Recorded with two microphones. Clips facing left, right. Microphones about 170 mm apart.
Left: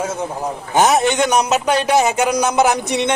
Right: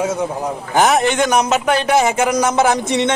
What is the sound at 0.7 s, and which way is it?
A man's voice, 20° left (ahead or behind).